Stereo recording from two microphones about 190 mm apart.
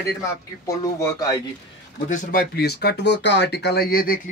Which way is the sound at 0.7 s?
15° left (ahead or behind).